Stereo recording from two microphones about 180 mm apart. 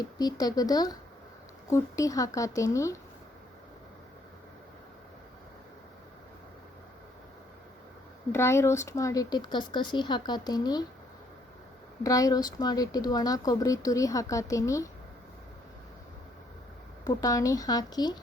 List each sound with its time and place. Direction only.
0.0 s speech: 20° left (ahead or behind)
8.3 s speech: 15° left (ahead or behind)
12.0 s speech: 20° left (ahead or behind)
17.0 s speech: 20° left (ahead or behind)